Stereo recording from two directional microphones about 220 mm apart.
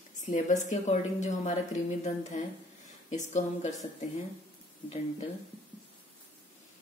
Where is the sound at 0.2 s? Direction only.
35° left (ahead or behind).